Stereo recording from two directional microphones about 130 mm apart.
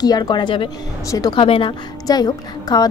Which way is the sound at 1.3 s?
45° left (ahead or behind).